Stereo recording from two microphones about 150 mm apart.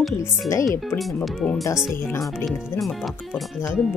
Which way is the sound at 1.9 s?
15° left (ahead or behind).